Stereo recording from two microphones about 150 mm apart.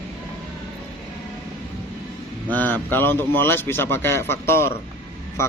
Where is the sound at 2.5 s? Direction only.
10° left (ahead or behind).